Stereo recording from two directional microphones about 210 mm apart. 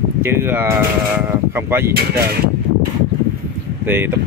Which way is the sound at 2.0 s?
50° right (ahead or behind).